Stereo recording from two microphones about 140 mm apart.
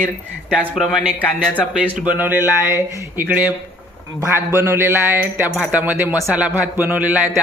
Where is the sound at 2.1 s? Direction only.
15° right (ahead or behind).